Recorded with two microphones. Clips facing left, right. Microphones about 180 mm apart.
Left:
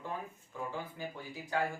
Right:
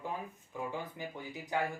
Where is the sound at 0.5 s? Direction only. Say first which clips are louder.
Right 1 dB; 15° right (ahead or behind).